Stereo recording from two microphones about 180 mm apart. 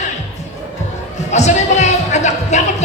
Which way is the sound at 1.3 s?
40° left (ahead or behind).